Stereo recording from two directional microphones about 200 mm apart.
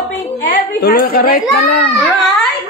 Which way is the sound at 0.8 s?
50° left (ahead or behind).